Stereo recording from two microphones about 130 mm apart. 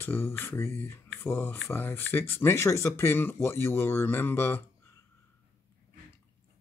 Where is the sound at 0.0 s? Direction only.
15° left (ahead or behind).